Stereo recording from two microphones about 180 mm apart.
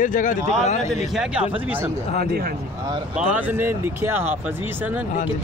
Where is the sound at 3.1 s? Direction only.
5° right (ahead or behind).